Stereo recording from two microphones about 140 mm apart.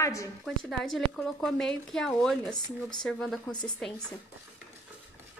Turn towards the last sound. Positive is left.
turn(degrees=5)  # may be behind; listen again after turning